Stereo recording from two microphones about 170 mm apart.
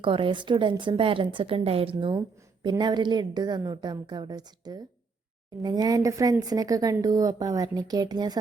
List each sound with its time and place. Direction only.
0.0 s a woman's voice: 30° right (ahead or behind)